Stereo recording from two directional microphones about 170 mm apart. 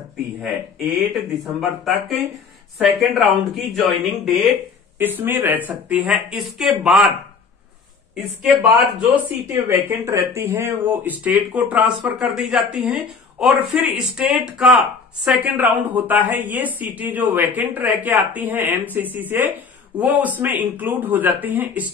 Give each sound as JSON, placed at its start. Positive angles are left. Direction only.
{"t": 0.4, "sound": "speech", "side_deg": 0}
{"t": 4.9, "sound": "speech", "side_deg": -10}
{"t": 9.1, "sound": "a woman's voice", "side_deg": -15}